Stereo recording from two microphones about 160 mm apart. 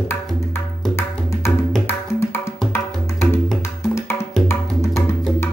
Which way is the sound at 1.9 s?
15° left (ahead or behind).